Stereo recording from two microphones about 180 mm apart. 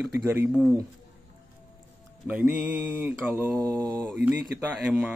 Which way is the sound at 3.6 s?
20° right (ahead or behind).